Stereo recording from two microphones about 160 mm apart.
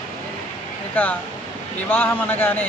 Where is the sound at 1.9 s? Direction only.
10° left (ahead or behind).